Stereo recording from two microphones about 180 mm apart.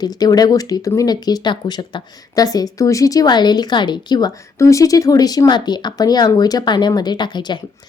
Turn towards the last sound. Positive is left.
turn(degrees=25)  # may be behind; listen again after turning